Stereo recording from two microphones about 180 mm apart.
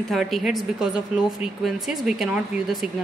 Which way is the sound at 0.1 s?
Centre (ahead or behind).